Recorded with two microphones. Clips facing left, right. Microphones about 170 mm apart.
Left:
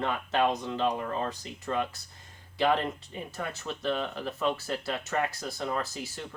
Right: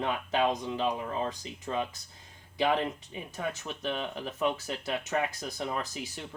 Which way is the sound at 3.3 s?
15° right (ahead or behind).